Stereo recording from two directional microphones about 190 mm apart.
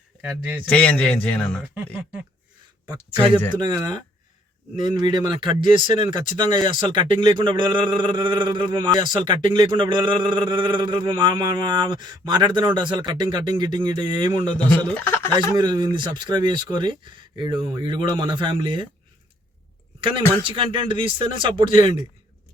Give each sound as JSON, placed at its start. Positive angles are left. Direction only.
{"t": 0.2, "sound": "speech", "side_deg": -5}
{"t": 0.7, "sound": "speech", "side_deg": 5}
{"t": 1.6, "sound": "speech", "side_deg": -10}
{"t": 3.1, "sound": "speech", "side_deg": -25}
{"t": 4.9, "sound": "speech", "side_deg": -25}
{"t": 14.4, "sound": "speech", "side_deg": 10}
{"t": 15.5, "sound": "speech", "side_deg": -25}
{"t": 20.5, "sound": "speech", "side_deg": -25}